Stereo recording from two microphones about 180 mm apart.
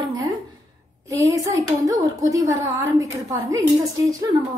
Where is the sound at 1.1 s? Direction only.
20° right (ahead or behind).